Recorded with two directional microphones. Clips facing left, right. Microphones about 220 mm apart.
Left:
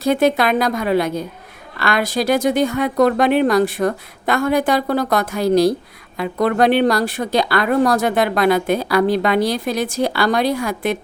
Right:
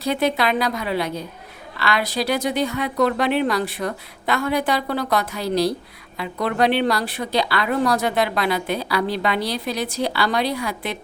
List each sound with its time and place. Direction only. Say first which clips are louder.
0.0 s a woman's voice: left 5 dB; 50° left (ahead or behind)